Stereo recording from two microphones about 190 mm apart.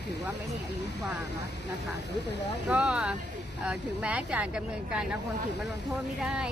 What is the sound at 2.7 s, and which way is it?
Speech, 5° right (ahead or behind).